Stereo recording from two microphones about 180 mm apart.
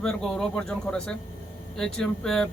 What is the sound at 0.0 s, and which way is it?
Speech, 5° left (ahead or behind).